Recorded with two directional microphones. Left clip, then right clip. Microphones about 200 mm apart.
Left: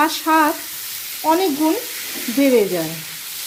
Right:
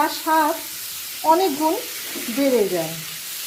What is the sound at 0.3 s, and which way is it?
Speech, 25° left (ahead or behind).